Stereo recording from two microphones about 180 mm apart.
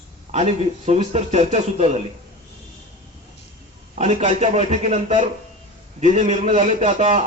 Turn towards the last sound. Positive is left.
turn(degrees=-40)  # may be behind; listen again after turning